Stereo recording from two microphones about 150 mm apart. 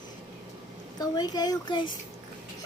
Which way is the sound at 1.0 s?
25° left (ahead or behind).